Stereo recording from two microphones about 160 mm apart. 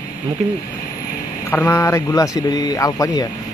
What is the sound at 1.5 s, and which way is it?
Speech, 15° left (ahead or behind).